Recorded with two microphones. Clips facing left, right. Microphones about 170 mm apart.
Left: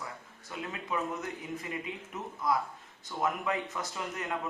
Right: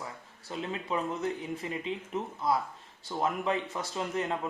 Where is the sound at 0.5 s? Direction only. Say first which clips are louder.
Right 3 dB; 25° right (ahead or behind).